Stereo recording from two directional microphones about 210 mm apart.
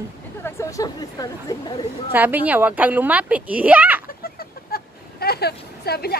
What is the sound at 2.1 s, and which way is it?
Speech, 10° right (ahead or behind).